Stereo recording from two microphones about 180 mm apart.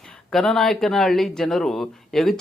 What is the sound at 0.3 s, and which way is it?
Speech, centre (ahead or behind).